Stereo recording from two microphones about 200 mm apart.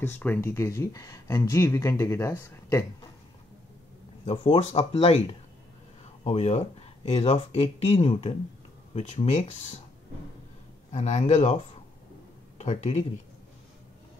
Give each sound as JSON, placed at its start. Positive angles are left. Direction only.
{"t": 0.0, "sound": "speech", "side_deg": 10}
{"t": 4.3, "sound": "speech", "side_deg": 30}
{"t": 10.9, "sound": "speech", "side_deg": 35}